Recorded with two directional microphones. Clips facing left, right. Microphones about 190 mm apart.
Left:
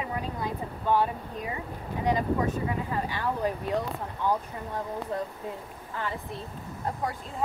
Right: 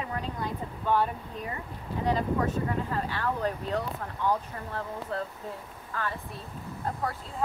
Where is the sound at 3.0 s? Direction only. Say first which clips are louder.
Left 1 dB; 15° left (ahead or behind).